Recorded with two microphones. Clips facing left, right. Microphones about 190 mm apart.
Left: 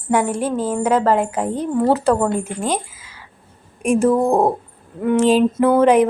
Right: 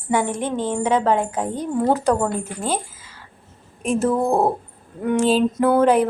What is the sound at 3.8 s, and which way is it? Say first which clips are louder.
A woman's voice: left 4 dB; 10° left (ahead or behind).